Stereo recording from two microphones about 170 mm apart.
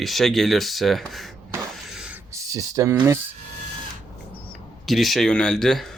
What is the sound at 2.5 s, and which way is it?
Speech, 20° right (ahead or behind).